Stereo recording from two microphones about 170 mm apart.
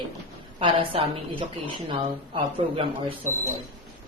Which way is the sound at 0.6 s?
30° right (ahead or behind).